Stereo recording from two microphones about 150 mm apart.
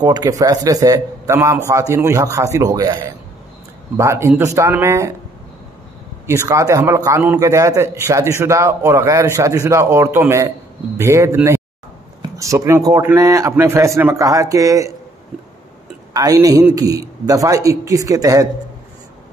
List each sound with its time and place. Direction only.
0.0 s a man's voice: 25° right (ahead or behind)
6.2 s a man's voice: 20° right (ahead or behind)
16.1 s a man's voice: 25° right (ahead or behind)